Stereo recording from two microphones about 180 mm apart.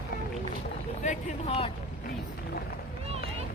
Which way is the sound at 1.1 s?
35° left (ahead or behind).